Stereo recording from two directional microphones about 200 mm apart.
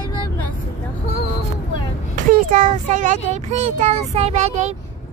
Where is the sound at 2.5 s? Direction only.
40° right (ahead or behind).